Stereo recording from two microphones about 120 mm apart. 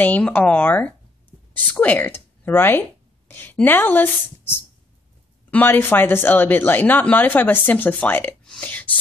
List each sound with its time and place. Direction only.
0.0 s speech: 15° left (ahead or behind)
3.3 s a sound: 15° left (ahead or behind)
3.5 s speech: 15° left (ahead or behind)